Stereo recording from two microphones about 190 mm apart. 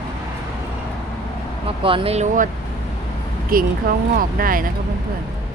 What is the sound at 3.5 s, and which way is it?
Speech, 50° right (ahead or behind).